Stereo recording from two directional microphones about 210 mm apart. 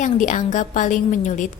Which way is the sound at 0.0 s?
35° left (ahead or behind).